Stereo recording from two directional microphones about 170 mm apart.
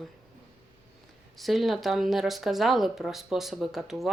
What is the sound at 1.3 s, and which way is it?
A woman's voice, centre (ahead or behind).